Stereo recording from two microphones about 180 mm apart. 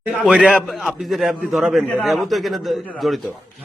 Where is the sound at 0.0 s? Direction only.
5° right (ahead or behind).